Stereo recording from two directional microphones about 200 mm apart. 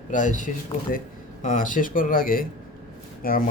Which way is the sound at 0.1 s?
40° left (ahead or behind).